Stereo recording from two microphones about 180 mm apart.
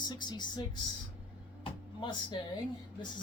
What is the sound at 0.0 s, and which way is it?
Speech, 25° left (ahead or behind).